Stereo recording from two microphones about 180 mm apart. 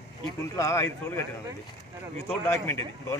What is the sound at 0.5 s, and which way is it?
Speech, 15° left (ahead or behind).